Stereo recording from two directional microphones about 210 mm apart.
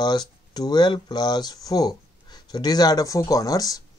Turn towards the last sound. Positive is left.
turn(degrees=15)  # may be behind; listen again after turning